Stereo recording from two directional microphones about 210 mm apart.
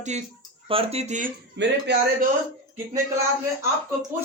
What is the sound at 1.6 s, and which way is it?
Speech, 55° right (ahead or behind).